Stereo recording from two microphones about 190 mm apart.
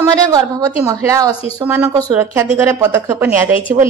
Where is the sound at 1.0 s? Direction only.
15° right (ahead or behind).